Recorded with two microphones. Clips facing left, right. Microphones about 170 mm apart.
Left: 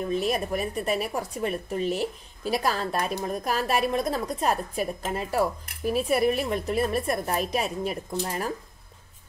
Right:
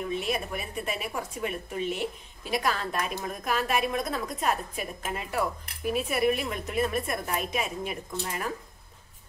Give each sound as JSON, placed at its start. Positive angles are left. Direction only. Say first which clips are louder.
{"t": 0.0, "sound": "a woman's voice", "louder": "left 4 dB", "side_deg": 40}